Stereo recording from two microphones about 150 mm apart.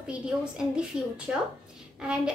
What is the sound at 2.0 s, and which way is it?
Speech, 5° right (ahead or behind).